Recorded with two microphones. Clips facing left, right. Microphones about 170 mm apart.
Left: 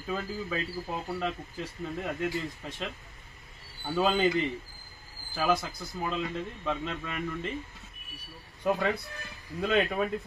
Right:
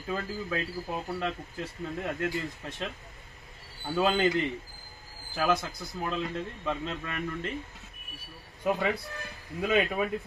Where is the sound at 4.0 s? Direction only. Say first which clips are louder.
Even; centre (ahead or behind).